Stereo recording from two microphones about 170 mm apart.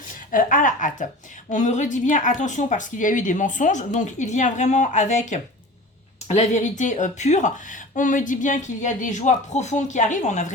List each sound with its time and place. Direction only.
0.3 s speech: 55° left (ahead or behind)